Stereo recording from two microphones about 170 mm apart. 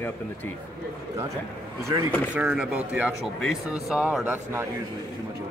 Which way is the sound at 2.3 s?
5° right (ahead or behind).